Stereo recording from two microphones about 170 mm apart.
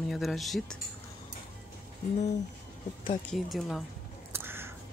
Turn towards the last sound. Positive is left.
turn(degrees=-15)  # may be behind; listen again after turning